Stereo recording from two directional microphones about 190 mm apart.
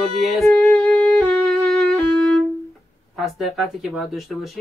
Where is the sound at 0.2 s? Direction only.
Centre (ahead or behind).